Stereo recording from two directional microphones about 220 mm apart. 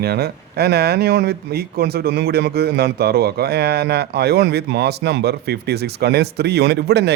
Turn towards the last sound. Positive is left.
turn(degrees=-50)  # may be behind; listen again after turning